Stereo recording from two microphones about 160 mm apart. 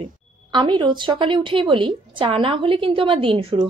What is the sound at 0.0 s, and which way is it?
A woman's voice, 30° right (ahead or behind).